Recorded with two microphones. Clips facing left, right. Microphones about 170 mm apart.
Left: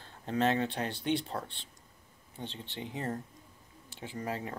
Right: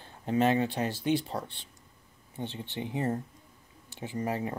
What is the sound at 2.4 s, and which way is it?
Speech, 15° right (ahead or behind).